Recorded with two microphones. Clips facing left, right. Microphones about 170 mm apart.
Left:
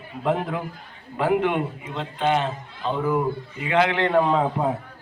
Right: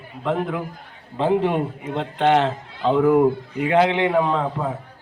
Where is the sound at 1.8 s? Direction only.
50° right (ahead or behind).